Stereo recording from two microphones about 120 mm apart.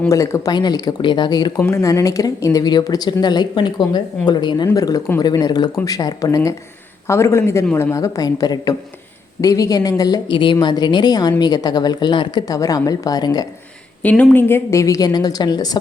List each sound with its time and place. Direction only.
0.1 s a woman's voice: 25° left (ahead or behind)
0.5 s a woman's voice: 35° left (ahead or behind)
14.0 s a woman's voice: 15° left (ahead or behind); by 15.8 s 35° left (ahead or behind)